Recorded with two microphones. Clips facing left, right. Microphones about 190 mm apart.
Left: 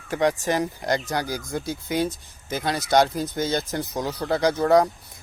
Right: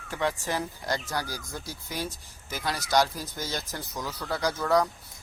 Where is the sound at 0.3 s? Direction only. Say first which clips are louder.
Left 7 dB; 20° left (ahead or behind).